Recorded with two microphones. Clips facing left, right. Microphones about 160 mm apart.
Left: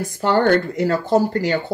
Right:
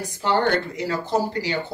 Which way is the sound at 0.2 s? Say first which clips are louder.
Left 5 dB; 50° left (ahead or behind).